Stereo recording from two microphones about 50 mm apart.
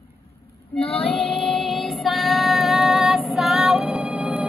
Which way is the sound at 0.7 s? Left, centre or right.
Left.